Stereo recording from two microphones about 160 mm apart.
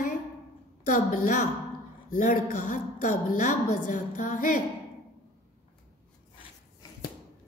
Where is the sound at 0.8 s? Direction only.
60° left (ahead or behind).